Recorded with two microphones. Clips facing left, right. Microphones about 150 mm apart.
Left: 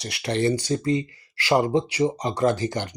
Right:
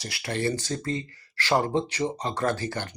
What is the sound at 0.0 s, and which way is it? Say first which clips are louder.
Speech: left 5 dB; 20° left (ahead or behind).